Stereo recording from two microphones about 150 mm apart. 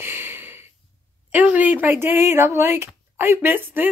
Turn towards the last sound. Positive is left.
turn(degrees=-15)  # may be behind; listen again after turning